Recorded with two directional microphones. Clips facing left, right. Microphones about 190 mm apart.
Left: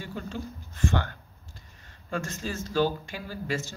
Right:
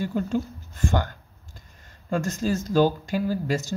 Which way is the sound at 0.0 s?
45° right (ahead or behind).